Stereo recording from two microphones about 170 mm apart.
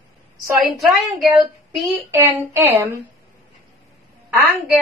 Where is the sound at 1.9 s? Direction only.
15° right (ahead or behind).